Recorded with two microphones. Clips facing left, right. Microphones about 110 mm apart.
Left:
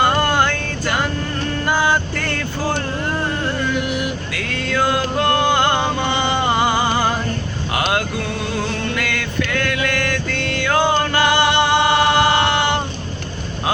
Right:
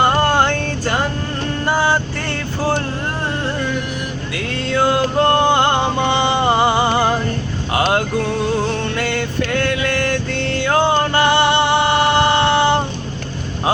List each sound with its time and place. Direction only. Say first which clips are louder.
0.2 s a sound: right 2 dB; 30° right (ahead or behind)
1.6 s vehicle: right 1 dB; 30° right (ahead or behind)
4.4 s music: right 3 dB; 25° right (ahead or behind)